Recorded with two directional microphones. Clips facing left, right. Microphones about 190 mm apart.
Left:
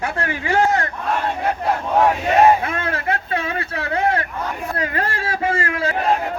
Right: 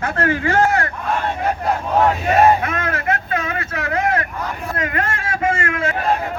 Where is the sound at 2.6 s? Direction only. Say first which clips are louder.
Right 1 dB; 30° left (ahead or behind).